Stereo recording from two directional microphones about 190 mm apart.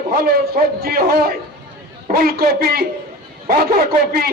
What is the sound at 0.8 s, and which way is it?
A man's voice, 55° right (ahead or behind).